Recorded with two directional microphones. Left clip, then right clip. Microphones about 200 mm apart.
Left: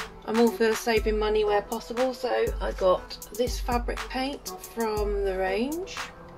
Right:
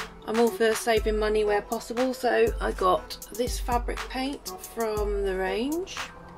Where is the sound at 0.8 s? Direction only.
10° right (ahead or behind).